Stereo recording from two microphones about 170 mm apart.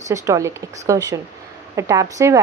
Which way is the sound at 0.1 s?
15° right (ahead or behind).